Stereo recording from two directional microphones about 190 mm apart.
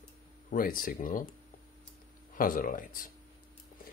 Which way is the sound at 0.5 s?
50° left (ahead or behind).